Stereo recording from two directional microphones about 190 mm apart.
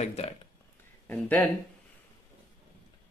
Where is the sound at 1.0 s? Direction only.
10° left (ahead or behind).